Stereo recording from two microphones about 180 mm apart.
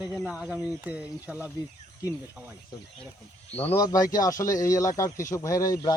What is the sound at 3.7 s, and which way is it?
Speech, 20° left (ahead or behind).